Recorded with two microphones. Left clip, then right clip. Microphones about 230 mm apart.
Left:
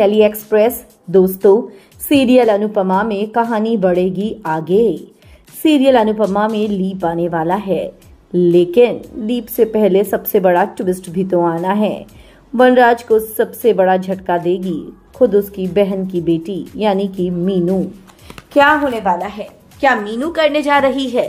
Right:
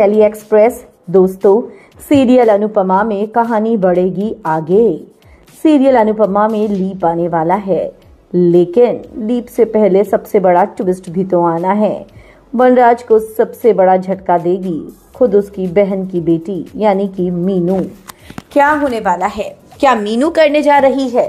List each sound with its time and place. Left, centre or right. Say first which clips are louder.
0.0 s a woman's voice: right 2 dB; centre
18.5 s a woman's voice: even; right
20.6 s a woman's voice: right 4 dB; centre